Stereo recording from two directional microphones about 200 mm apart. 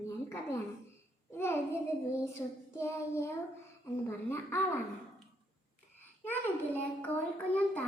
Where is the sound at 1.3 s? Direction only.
10° left (ahead or behind).